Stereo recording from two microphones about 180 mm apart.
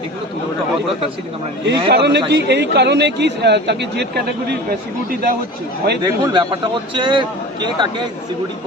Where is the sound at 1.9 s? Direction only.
70° right (ahead or behind).